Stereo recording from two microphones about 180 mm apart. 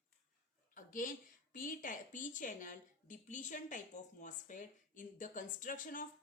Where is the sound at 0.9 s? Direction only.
50° left (ahead or behind).